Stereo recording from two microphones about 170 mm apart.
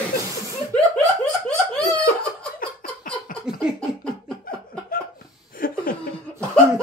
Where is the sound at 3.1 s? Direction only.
5° left (ahead or behind).